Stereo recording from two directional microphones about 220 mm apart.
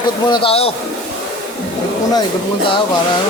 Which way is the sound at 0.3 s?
25° left (ahead or behind).